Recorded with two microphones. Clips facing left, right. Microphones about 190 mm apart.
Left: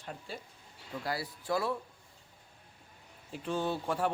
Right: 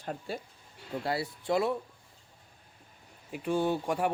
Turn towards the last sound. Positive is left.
turn(degrees=-15)  # may be behind; listen again after turning